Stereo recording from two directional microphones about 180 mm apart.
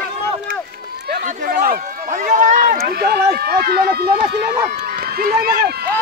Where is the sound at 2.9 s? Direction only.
60° right (ahead or behind).